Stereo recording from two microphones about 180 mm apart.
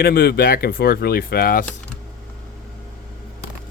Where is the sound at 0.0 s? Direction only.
60° left (ahead or behind).